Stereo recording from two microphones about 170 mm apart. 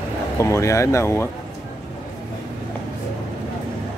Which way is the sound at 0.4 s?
15° left (ahead or behind).